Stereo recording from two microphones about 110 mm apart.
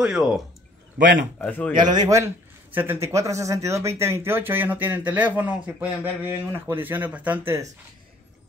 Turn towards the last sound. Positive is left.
turn(degrees=-25)  # may be behind; listen again after turning